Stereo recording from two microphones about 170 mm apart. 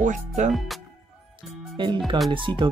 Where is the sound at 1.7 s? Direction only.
25° right (ahead or behind).